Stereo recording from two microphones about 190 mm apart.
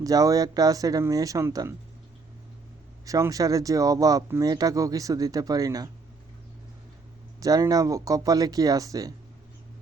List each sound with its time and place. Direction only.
0.0 s speech: 20° right (ahead or behind)
3.1 s speech: 15° right (ahead or behind)
7.3 s speech: 20° right (ahead or behind)